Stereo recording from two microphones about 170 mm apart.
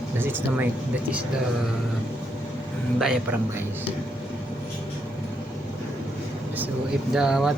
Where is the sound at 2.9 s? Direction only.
5° right (ahead or behind).